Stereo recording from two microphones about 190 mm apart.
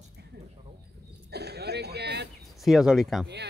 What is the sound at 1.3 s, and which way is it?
Speech, 60° right (ahead or behind).